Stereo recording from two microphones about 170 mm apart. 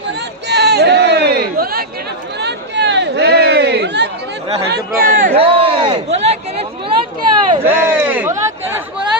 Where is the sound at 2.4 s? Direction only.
85° right.